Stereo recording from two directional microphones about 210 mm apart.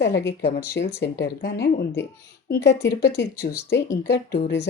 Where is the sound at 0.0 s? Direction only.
55° left (ahead or behind).